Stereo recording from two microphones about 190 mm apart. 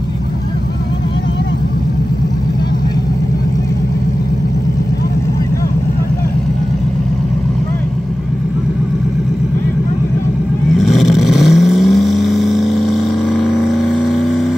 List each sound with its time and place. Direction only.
10.8 s vehicle: centre (ahead or behind)